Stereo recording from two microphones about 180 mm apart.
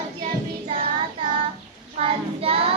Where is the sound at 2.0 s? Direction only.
30° right (ahead or behind).